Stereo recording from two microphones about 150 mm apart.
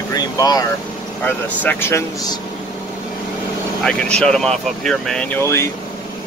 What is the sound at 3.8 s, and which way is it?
Speech, 5° left (ahead or behind).